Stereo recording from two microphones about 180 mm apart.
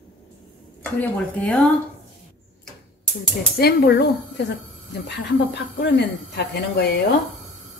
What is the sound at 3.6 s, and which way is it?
Speech, 65° left (ahead or behind).